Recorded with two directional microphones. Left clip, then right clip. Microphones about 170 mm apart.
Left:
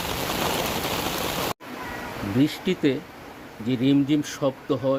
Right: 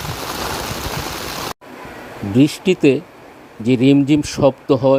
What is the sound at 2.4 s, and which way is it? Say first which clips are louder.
Speech: right 10 dB; 40° right (ahead or behind).